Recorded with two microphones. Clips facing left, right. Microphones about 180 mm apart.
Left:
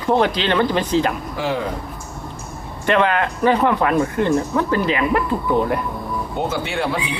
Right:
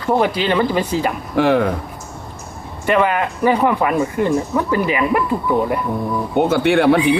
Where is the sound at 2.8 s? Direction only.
5° right (ahead or behind).